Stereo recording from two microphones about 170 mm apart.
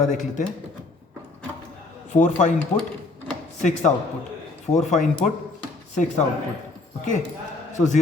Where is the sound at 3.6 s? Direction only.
45° left (ahead or behind).